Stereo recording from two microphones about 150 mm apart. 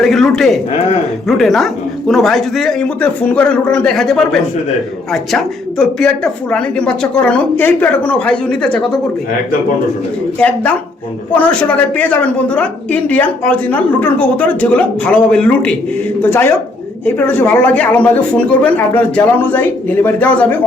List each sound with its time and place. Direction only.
0.0 s a woman's voice: centre (ahead or behind)
10.4 s a woman's voice: 10° left (ahead or behind)